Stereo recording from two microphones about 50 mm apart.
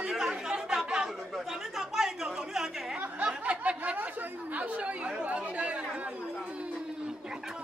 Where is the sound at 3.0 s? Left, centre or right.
Right.